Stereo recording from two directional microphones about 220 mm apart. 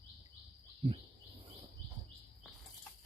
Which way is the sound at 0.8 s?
25° right (ahead or behind).